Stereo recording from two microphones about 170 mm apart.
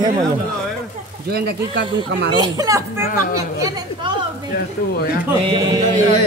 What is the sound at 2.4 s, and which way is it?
Speech, 20° right (ahead or behind).